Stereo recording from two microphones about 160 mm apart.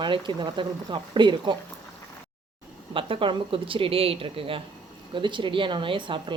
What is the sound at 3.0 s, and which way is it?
Speech, 35° right (ahead or behind).